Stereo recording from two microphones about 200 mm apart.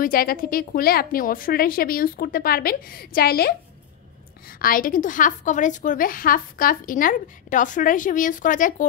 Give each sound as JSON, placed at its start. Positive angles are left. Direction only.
{"t": 0.0, "sound": "a woman's voice", "side_deg": 45}